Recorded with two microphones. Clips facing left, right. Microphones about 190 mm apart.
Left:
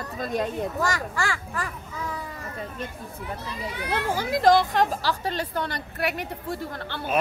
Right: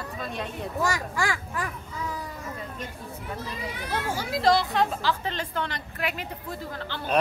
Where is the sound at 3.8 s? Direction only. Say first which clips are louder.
Left 4 dB; 55° left (ahead or behind).